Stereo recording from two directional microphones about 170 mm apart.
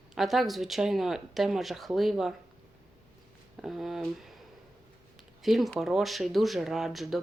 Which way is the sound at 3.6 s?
Centre (ahead or behind).